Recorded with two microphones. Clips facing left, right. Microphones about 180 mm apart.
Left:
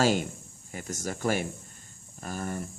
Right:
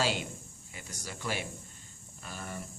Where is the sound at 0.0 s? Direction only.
45° left (ahead or behind).